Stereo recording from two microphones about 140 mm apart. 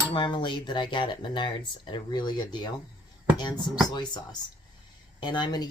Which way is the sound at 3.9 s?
30° left (ahead or behind).